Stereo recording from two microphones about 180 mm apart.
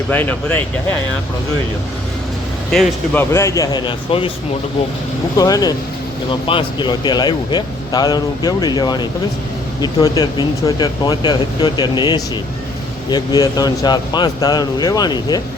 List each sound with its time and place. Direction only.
0.1 s speech: 10° left (ahead or behind)
2.7 s speech: 5° left (ahead or behind); by 4.3 s 30° left (ahead or behind)
5.4 s speech: 20° left (ahead or behind)